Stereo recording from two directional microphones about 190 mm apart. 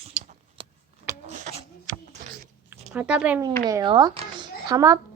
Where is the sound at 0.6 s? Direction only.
30° right (ahead or behind).